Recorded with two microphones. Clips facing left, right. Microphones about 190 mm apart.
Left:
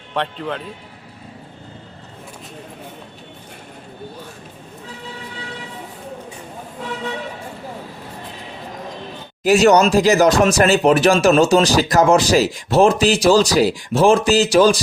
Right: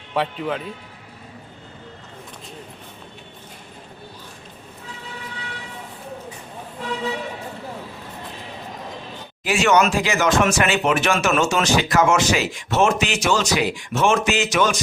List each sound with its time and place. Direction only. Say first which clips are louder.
0.1 s speech: even; 5° right (ahead or behind)
9.4 s speech: left 6 dB; 40° left (ahead or behind)